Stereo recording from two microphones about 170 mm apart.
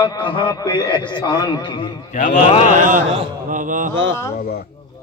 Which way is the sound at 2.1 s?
50° left (ahead or behind).